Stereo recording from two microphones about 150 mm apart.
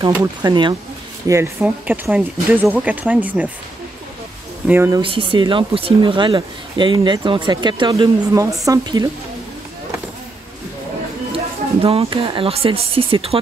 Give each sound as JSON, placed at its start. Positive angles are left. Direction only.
{"t": 0.0, "sound": "speech", "side_deg": -25}
{"t": 1.2, "sound": "speech", "side_deg": -15}
{"t": 4.6, "sound": "speech", "side_deg": -15}
{"t": 5.0, "sound": "speech", "side_deg": -35}
{"t": 11.8, "sound": "speech", "side_deg": -40}